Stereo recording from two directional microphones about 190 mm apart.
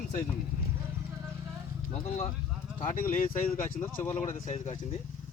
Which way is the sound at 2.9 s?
45° left (ahead or behind).